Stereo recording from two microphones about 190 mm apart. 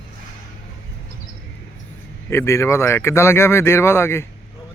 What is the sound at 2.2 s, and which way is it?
Speech, 15° left (ahead or behind).